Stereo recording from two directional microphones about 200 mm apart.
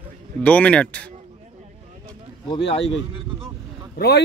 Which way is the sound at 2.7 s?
30° left (ahead or behind).